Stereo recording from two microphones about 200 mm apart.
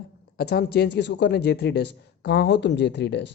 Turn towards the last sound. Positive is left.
turn(degrees=60)  # may be behind; listen again after turning